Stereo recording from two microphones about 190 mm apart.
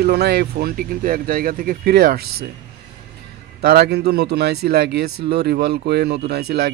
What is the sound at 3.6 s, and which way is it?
Speech, 55° right (ahead or behind).